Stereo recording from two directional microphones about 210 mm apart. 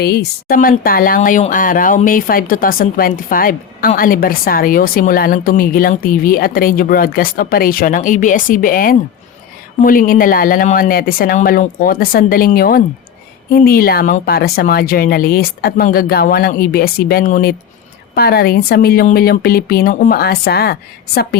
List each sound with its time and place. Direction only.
0.0 s speech: 50° left (ahead or behind)